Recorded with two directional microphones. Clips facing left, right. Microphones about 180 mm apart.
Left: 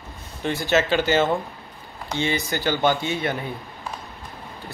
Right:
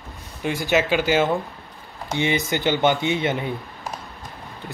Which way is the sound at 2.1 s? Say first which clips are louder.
Right 2 dB; 20° right (ahead or behind).